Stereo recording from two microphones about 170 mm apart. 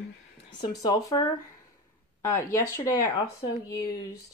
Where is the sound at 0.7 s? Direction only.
20° left (ahead or behind).